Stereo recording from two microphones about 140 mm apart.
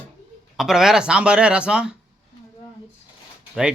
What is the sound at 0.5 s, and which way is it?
Speech, 5° right (ahead or behind).